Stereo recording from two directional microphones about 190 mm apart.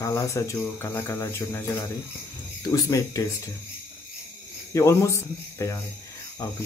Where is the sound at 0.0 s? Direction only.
15° left (ahead or behind).